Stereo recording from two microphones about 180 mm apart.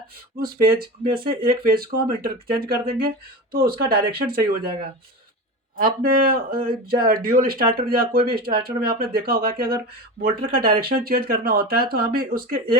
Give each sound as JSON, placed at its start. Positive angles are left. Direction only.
{"t": 0.3, "sound": "speech", "side_deg": -55}
{"t": 5.8, "sound": "speech", "side_deg": -55}